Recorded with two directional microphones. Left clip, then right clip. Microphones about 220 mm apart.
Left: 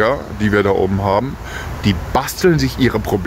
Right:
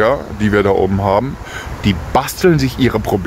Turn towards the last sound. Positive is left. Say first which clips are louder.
# right 1 dB
turn(degrees=-10)  # may be behind; listen again after turning